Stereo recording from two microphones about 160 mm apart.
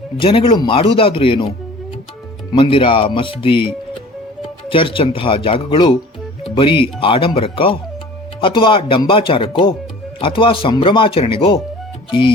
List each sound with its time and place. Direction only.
0.2 s speech: 35° left (ahead or behind)